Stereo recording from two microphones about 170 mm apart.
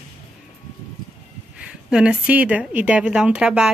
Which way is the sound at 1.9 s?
5° right (ahead or behind).